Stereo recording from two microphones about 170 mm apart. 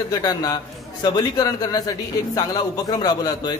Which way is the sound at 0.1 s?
25° left (ahead or behind).